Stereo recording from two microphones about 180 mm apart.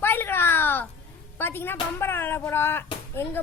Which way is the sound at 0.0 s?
10° left (ahead or behind).